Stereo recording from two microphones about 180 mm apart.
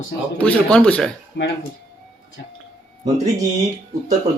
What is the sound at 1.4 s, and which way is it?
Speech, 70° left (ahead or behind).